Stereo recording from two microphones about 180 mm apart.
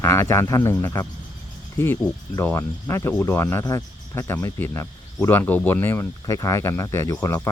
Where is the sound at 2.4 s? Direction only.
15° left (ahead or behind).